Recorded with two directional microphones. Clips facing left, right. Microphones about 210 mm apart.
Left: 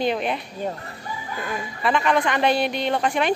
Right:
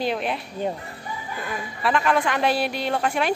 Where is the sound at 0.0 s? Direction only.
Centre (ahead or behind).